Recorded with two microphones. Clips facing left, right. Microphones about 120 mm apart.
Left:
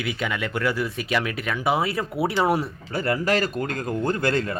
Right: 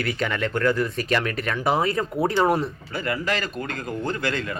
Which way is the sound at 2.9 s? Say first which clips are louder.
Left 4 dB; 40° left (ahead or behind).